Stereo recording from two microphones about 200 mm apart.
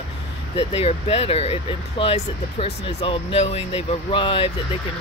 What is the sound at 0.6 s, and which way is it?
Speech, 30° left (ahead or behind).